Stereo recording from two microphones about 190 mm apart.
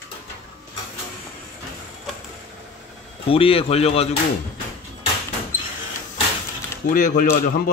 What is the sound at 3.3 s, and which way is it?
Speech, 30° left (ahead or behind).